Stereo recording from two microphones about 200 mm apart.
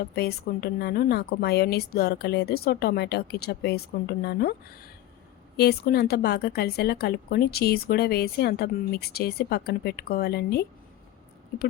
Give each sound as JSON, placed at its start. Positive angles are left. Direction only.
{"t": 0.0, "sound": "a woman's voice", "side_deg": 50}